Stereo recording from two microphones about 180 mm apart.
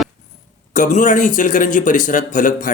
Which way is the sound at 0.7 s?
45° left (ahead or behind).